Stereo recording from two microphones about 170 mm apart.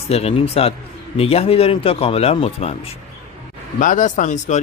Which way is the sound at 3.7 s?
50° left (ahead or behind).